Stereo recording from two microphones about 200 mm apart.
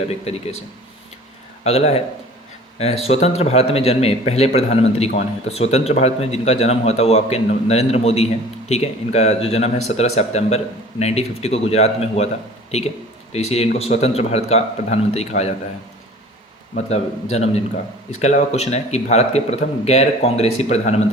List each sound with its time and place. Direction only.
0.3 s a man's voice: 30° left (ahead or behind)
1.6 s a man's voice: 30° left (ahead or behind)
16.7 s a man's voice: 35° left (ahead or behind)